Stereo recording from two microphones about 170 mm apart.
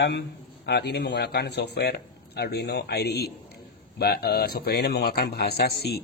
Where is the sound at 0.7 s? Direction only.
80° left.